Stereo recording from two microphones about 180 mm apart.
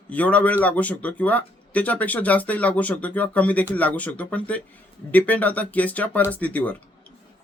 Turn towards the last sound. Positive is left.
turn(degrees=10)  # may be behind; listen again after turning